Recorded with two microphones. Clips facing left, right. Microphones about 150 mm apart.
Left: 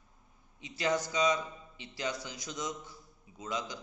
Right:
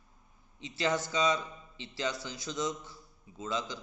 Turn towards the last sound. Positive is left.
turn(degrees=20)  # may be behind; listen again after turning